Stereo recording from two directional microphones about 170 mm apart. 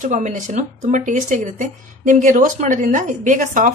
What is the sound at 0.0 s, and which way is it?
Speech, 45° right (ahead or behind).